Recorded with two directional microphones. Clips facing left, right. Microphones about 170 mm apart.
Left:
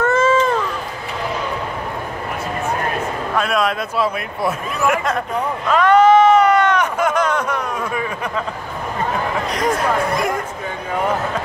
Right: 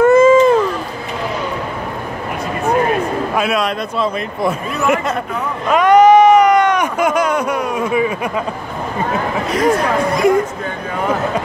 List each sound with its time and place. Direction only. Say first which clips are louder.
0.0 s cat: right 8 dB; 10° right (ahead or behind)
3.3 s speech: left 1 dB; centre (ahead or behind)
5.7 s a sound: right 3 dB; 15° right (ahead or behind)
9.5 s speech: right 6 dB; 5° right (ahead or behind)